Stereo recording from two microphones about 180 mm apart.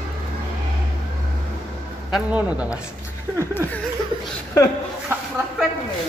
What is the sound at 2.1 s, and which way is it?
Speech, 10° right (ahead or behind).